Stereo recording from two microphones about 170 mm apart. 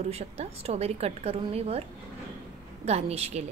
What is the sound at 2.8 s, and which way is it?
Speech, 40° right (ahead or behind).